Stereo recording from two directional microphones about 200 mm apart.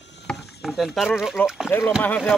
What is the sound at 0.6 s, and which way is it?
Speech, centre (ahead or behind).